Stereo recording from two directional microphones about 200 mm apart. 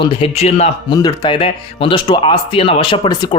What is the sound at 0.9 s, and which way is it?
Speech, 20° left (ahead or behind).